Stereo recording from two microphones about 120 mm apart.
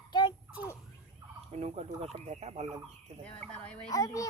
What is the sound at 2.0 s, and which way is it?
Speech, 65° right (ahead or behind).